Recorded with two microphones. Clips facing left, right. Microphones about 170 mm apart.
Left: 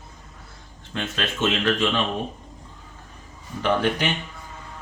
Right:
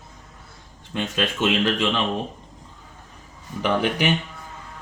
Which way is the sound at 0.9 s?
15° right (ahead or behind).